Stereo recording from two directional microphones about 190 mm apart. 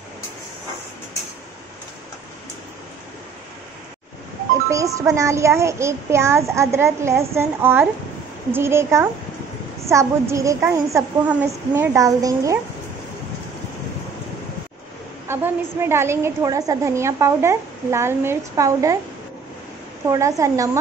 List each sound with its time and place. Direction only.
4.6 s a woman's voice: 15° right (ahead or behind)
15.2 s a woman's voice: 10° right (ahead or behind)
20.1 s a woman's voice: 15° right (ahead or behind)